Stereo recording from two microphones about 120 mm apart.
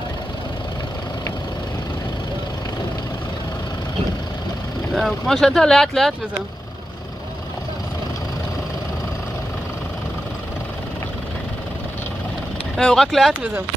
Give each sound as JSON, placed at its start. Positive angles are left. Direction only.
{"t": 4.9, "sound": "speech", "side_deg": 0}
{"t": 12.7, "sound": "speech", "side_deg": 5}